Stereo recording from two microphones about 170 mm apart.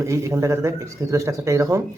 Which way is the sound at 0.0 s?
20° right (ahead or behind).